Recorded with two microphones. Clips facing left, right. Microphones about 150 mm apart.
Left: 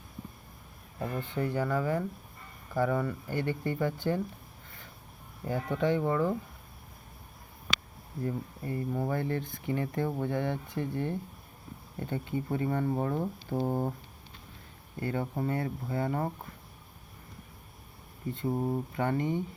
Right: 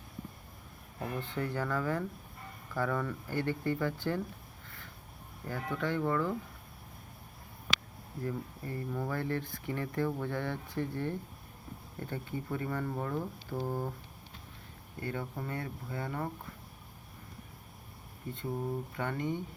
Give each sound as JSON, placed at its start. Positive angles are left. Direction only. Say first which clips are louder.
{"t": 1.2, "sound": "speech", "louder": "left 5 dB", "side_deg": 15}
{"t": 5.5, "sound": "speech", "louder": "left 6 dB", "side_deg": 20}
{"t": 8.2, "sound": "speech", "louder": "left 3 dB", "side_deg": 20}
{"t": 15.0, "sound": "speech", "louder": "left 6 dB", "side_deg": 35}
{"t": 18.4, "sound": "speech", "louder": "left 5 dB", "side_deg": 30}